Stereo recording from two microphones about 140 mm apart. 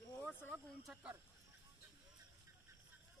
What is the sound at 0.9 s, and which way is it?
Speech, centre (ahead or behind).